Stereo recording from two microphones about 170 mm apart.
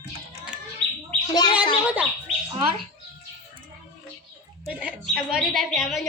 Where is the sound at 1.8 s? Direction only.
10° right (ahead or behind).